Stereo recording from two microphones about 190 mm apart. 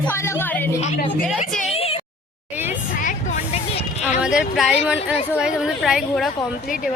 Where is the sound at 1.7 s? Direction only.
30° left (ahead or behind).